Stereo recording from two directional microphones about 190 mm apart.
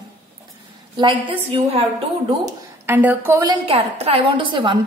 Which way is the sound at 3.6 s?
30° right (ahead or behind).